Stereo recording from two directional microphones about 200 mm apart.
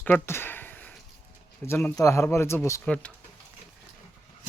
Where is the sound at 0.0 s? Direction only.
10° left (ahead or behind).